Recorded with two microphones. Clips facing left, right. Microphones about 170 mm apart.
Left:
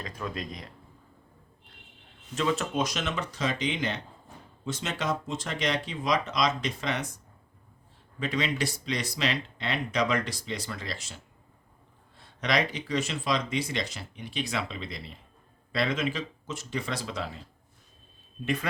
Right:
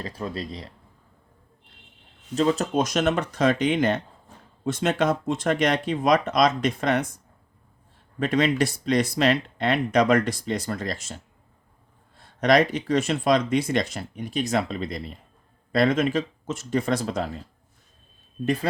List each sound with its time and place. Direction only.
0.0 s speech: 35° right (ahead or behind)
2.3 s speech: 35° right (ahead or behind); by 7.0 s 50° right (ahead or behind)
8.2 s speech: 50° right (ahead or behind)
12.4 s speech: 50° right (ahead or behind)
18.4 s speech: 35° right (ahead or behind)